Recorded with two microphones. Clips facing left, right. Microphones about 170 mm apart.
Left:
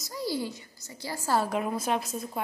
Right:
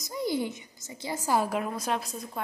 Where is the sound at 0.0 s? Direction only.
20° right (ahead or behind).